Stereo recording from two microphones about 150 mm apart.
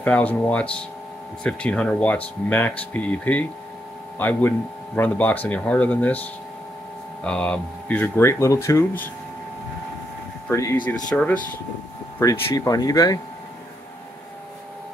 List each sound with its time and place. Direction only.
0.0 s speech: 10° left (ahead or behind)
7.2 s speech: 5° left (ahead or behind)
10.5 s speech: 20° left (ahead or behind)
12.2 s speech: 25° left (ahead or behind)